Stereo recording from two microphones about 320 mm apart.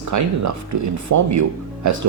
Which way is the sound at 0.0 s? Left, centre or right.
Right.